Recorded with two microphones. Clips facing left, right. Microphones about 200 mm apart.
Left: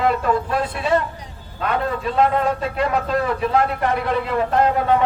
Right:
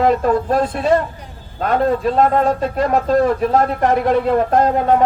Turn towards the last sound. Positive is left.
turn(degrees=-40)  # may be behind; listen again after turning